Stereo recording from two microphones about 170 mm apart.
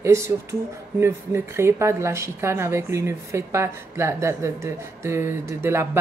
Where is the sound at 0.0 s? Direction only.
15° right (ahead or behind).